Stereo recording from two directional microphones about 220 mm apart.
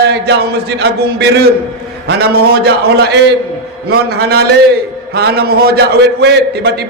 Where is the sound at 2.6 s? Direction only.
50° right (ahead or behind).